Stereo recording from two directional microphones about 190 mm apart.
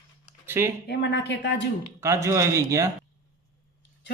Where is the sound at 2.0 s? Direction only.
15° right (ahead or behind).